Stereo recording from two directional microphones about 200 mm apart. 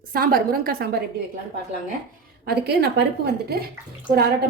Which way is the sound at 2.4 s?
55° right (ahead or behind).